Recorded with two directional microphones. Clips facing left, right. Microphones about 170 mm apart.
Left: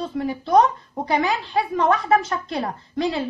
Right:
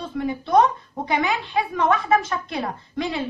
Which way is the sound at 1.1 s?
40° left (ahead or behind).